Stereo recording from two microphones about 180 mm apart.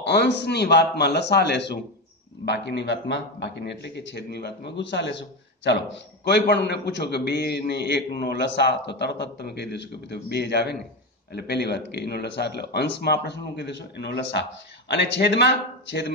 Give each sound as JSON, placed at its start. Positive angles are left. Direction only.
{"t": 0.0, "sound": "a man's voice", "side_deg": 70}